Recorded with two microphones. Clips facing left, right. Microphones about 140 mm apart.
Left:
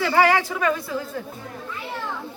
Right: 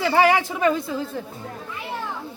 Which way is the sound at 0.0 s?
20° right (ahead or behind).